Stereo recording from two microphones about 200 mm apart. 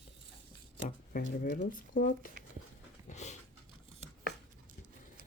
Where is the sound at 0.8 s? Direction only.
45° left (ahead or behind).